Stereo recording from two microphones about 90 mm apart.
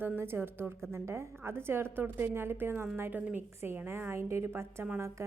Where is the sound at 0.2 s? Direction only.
25° right (ahead or behind).